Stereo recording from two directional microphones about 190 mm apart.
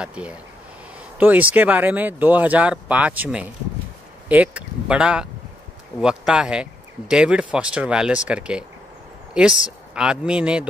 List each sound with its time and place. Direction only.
0.0 s speech: 5° right (ahead or behind)